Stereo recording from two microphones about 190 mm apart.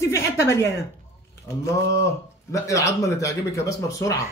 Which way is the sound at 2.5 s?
15° left (ahead or behind).